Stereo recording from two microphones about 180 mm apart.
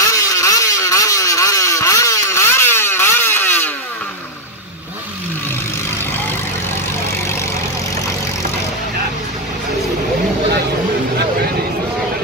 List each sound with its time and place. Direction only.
0.0 s vehicle: 15° left (ahead or behind)